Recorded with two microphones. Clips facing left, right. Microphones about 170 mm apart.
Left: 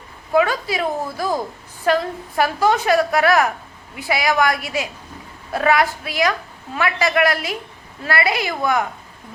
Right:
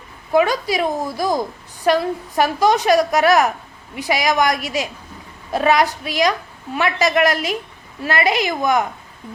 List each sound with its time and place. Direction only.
0.3 s a woman's voice: 15° right (ahead or behind)